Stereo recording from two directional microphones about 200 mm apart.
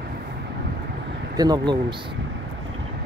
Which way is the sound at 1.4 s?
20° right (ahead or behind).